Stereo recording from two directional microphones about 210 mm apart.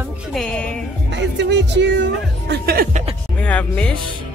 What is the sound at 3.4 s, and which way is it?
Speech, 5° left (ahead or behind).